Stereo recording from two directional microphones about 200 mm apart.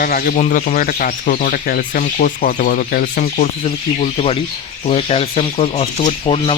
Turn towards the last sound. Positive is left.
turn(degrees=30)  # may be behind; listen again after turning